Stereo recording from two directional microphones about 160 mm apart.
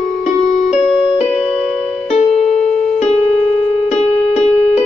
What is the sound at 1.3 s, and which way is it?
Music, centre (ahead or behind).